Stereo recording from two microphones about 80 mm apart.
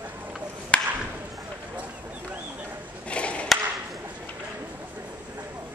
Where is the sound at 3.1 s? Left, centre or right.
Centre.